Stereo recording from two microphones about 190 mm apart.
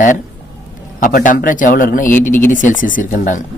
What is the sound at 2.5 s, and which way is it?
Speech, 45° left (ahead or behind).